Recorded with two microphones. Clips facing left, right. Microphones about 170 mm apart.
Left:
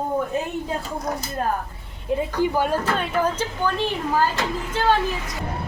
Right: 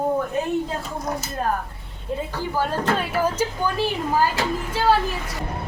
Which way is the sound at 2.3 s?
15° left (ahead or behind).